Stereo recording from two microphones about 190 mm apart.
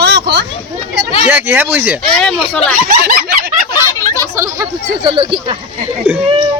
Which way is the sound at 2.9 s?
50° right (ahead or behind).